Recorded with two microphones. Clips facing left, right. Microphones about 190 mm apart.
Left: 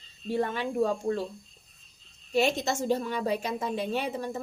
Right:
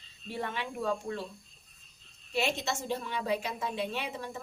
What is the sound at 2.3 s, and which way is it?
A woman's voice, 40° left (ahead or behind).